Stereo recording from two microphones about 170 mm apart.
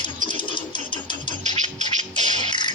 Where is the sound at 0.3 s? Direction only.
30° left (ahead or behind).